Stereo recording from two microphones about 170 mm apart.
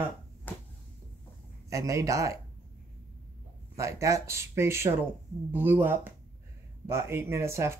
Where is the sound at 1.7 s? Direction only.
20° right (ahead or behind).